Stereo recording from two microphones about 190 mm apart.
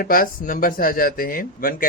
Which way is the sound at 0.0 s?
50° left (ahead or behind).